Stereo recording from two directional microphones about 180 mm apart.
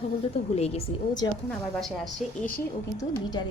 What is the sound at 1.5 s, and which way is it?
A woman's voice, 5° left (ahead or behind).